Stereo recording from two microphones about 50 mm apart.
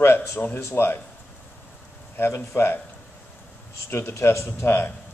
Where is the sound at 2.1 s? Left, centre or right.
Left.